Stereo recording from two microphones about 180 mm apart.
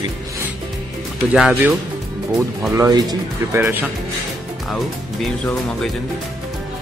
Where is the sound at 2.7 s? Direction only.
20° right (ahead or behind).